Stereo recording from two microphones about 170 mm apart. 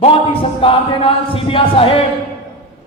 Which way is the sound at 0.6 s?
30° left (ahead or behind).